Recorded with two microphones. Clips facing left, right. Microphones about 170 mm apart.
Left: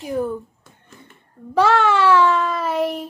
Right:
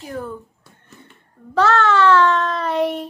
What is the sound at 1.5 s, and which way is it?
Speech, 10° left (ahead or behind).